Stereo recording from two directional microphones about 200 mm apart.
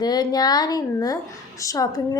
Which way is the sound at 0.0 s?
20° left (ahead or behind).